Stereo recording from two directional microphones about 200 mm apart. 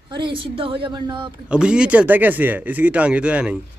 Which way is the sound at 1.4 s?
5° right (ahead or behind).